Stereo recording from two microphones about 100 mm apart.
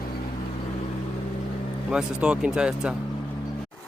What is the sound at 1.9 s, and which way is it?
Speech, 10° right (ahead or behind).